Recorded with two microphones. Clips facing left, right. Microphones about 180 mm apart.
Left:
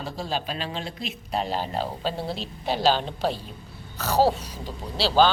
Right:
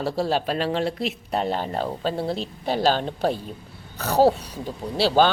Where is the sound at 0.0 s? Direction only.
65° right (ahead or behind).